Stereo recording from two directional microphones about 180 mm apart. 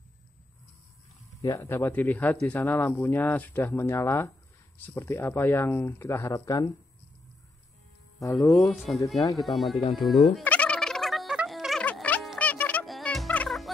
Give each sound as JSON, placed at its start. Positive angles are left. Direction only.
{"t": 1.4, "sound": "speech", "side_deg": 20}
{"t": 8.2, "sound": "speech", "side_deg": 20}
{"t": 8.6, "sound": "speech", "side_deg": 0}
{"t": 9.0, "sound": "speech", "side_deg": 15}
{"t": 9.4, "sound": "speech", "side_deg": 0}
{"t": 9.9, "sound": "turkey", "side_deg": 0}